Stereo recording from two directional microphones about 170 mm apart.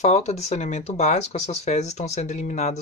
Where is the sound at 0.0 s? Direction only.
40° left (ahead or behind).